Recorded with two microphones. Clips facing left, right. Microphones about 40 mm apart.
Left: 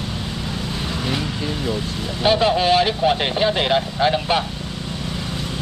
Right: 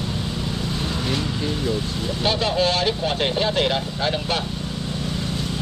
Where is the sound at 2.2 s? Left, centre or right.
Centre.